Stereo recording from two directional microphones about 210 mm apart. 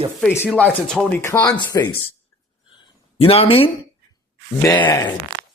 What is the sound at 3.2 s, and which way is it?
Speech, 25° left (ahead or behind).